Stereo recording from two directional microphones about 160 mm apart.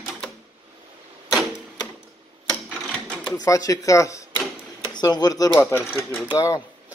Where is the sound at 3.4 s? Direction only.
20° left (ahead or behind).